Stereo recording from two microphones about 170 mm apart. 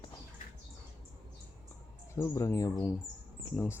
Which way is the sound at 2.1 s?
15° left (ahead or behind).